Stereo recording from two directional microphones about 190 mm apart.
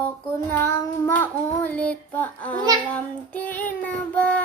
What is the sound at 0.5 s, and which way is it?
Child singing, 10° left (ahead or behind).